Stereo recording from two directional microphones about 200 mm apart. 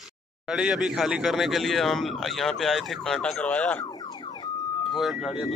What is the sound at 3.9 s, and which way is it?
Car alarm, 20° left (ahead or behind).